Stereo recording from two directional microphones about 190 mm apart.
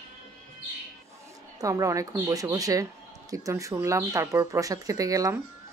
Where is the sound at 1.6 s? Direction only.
15° right (ahead or behind).